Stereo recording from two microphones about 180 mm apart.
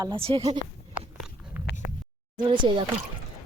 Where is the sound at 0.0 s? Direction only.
30° right (ahead or behind).